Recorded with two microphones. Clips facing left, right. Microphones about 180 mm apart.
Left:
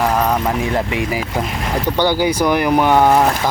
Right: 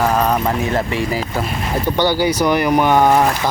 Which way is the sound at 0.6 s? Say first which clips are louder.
Even; 15° left (ahead or behind).